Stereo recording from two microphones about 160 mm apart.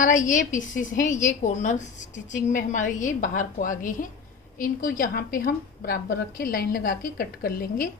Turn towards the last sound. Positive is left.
turn(degrees=65)  # may be behind; listen again after turning